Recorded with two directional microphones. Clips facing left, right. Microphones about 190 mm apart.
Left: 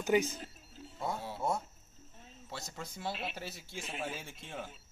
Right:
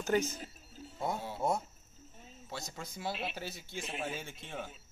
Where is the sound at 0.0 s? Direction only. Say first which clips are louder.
Left 2 dB; 15° left (ahead or behind).